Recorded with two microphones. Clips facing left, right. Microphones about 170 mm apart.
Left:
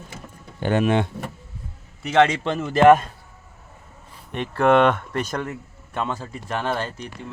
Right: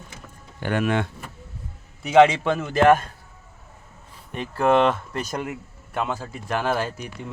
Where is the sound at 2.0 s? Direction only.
5° right (ahead or behind).